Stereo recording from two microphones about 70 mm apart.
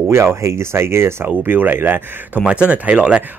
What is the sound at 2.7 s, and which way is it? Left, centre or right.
Speech, centre.